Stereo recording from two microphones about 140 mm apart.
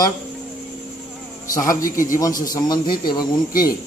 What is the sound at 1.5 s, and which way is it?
A man's voice, 20° left (ahead or behind).